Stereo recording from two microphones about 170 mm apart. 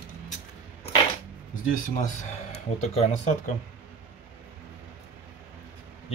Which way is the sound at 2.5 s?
40° left (ahead or behind).